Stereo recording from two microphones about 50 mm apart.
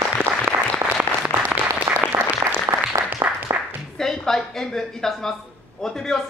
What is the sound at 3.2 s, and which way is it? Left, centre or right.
Music, right.